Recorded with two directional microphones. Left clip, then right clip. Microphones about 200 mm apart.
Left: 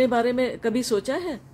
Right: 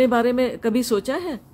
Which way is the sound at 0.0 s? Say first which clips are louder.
Right 3 dB; 5° right (ahead or behind).